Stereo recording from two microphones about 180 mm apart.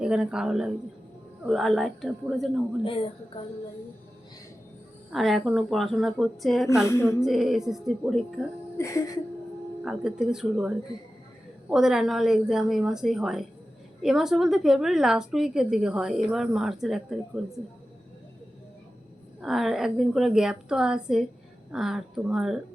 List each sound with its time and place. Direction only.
0.0 s a woman's voice: 5° right (ahead or behind)
2.8 s a woman's voice: 30° left (ahead or behind)
5.1 s a woman's voice: centre (ahead or behind)
6.8 s a sound: 15° left (ahead or behind)
7.2 s a woman's voice: centre (ahead or behind)
8.8 s a sound: 20° left (ahead or behind)
9.8 s a woman's voice: 5° right (ahead or behind)
19.4 s a woman's voice: centre (ahead or behind)